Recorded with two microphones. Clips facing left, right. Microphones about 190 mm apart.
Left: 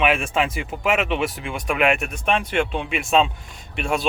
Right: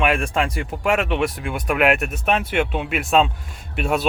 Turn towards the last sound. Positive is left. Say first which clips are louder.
# right 2 dB
turn(degrees=0)  # may be behind; listen again after turning